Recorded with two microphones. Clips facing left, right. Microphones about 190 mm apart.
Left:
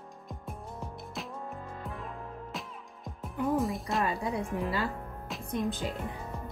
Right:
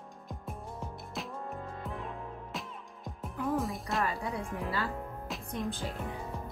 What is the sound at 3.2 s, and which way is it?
Speech, centre (ahead or behind).